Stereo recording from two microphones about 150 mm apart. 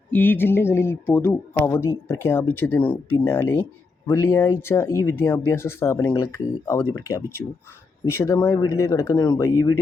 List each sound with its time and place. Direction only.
0.1 s speech: 15° left (ahead or behind)